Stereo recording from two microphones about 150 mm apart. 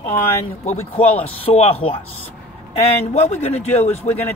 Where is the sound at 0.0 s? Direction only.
20° left (ahead or behind).